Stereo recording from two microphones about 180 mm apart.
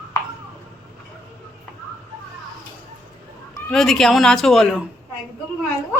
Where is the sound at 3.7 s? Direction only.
Centre (ahead or behind).